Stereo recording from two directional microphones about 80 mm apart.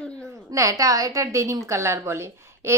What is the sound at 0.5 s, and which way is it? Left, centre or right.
A woman's voice, right.